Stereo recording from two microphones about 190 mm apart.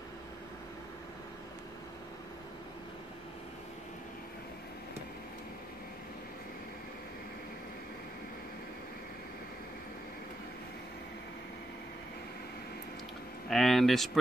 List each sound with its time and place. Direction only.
13.5 s speech: centre (ahead or behind)